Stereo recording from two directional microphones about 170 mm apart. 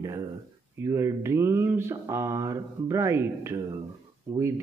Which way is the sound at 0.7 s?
15° right (ahead or behind).